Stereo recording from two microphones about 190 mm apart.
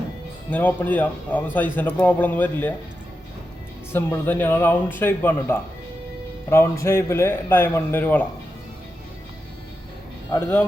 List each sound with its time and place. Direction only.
0.5 s a man's voice: 10° left (ahead or behind)
3.9 s a man's voice: 10° left (ahead or behind)
10.3 s a man's voice: 15° left (ahead or behind)